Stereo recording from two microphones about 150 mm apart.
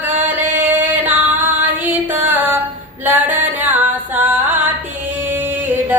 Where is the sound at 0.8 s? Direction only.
10° right (ahead or behind).